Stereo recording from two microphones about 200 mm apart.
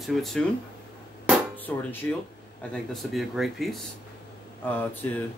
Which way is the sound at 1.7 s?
5° left (ahead or behind).